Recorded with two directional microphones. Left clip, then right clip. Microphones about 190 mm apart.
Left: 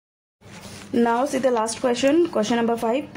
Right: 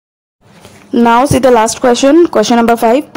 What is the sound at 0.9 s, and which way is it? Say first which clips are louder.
A woman's voice: right 12 dB; 40° right (ahead or behind).